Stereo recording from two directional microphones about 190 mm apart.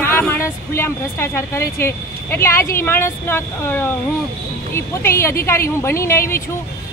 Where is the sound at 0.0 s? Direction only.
10° left (ahead or behind).